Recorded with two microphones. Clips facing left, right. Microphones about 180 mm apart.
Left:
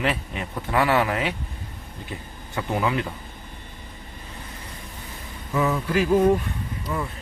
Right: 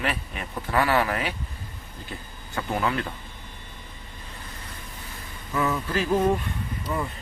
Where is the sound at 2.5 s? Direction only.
15° left (ahead or behind).